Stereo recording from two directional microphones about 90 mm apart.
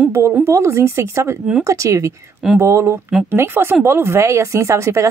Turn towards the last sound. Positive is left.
turn(degrees=-35)  # may be behind; listen again after turning